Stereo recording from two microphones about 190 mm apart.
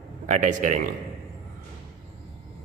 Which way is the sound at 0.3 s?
40° right (ahead or behind).